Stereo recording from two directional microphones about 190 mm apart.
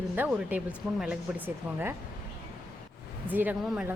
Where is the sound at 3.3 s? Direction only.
10° right (ahead or behind).